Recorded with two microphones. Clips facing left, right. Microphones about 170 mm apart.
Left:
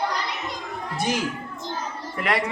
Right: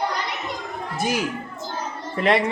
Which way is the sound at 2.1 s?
25° right (ahead or behind).